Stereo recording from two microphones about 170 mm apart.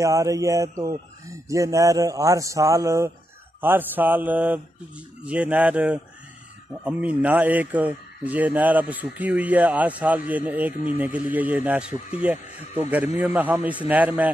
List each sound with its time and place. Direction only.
0.0 s speech: 20° right (ahead or behind)